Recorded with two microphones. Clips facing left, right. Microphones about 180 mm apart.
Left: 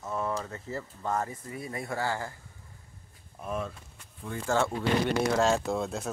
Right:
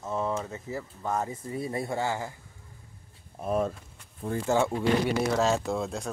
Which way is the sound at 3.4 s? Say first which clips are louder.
Right 7 dB; 40° right (ahead or behind).